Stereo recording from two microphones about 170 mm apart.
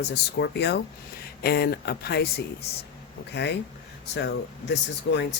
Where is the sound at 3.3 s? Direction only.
90° left.